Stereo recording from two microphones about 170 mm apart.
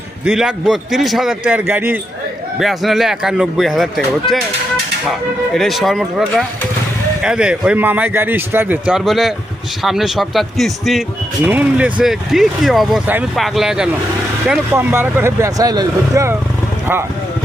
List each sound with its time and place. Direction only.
0.3 s a man's voice: centre (ahead or behind)
2.6 s a man's voice: centre (ahead or behind)
5.5 s a man's voice: centre (ahead or behind)